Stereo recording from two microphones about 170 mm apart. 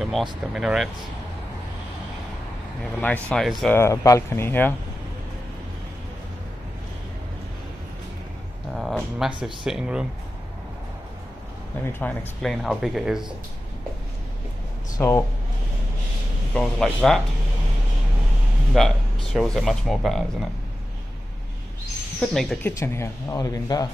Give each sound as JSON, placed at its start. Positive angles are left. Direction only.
{"t": 0.0, "sound": "speech", "side_deg": 0}
{"t": 3.0, "sound": "speech", "side_deg": 10}
{"t": 3.7, "sound": "speech", "side_deg": 15}
{"t": 8.7, "sound": "music", "side_deg": 0}
{"t": 9.7, "sound": "speech", "side_deg": -5}
{"t": 11.8, "sound": "speech", "side_deg": 15}
{"t": 12.4, "sound": "speech", "side_deg": 0}
{"t": 15.0, "sound": "speech", "side_deg": 15}
{"t": 16.5, "sound": "speech", "side_deg": 5}
{"t": 18.8, "sound": "speech", "side_deg": 0}
{"t": 22.2, "sound": "speech", "side_deg": 0}